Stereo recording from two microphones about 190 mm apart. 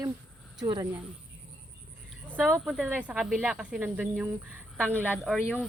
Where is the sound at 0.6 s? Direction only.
20° right (ahead or behind).